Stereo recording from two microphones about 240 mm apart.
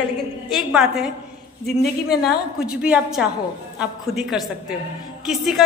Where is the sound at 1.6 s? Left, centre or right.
Left.